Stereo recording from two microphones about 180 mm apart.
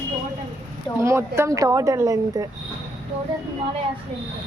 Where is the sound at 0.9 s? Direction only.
15° right (ahead or behind).